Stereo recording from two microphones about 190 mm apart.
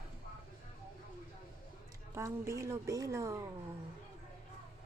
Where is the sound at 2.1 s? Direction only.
15° right (ahead or behind).